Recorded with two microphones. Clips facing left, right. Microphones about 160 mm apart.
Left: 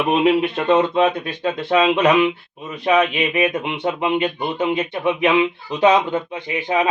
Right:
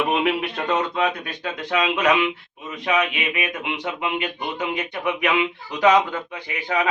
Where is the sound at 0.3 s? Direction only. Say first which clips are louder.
Left 7 dB; 25° left (ahead or behind).